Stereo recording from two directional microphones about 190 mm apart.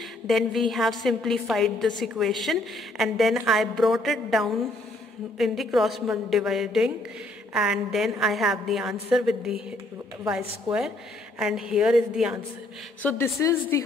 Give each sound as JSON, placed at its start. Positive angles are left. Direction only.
{"t": 0.3, "sound": "a woman's voice", "side_deg": 0}
{"t": 11.3, "sound": "a woman's voice", "side_deg": 0}
{"t": 13.0, "sound": "a woman's voice", "side_deg": 15}